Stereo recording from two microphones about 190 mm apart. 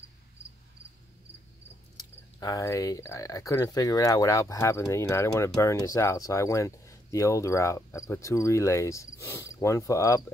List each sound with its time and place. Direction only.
2.0 s speech: 20° left (ahead or behind)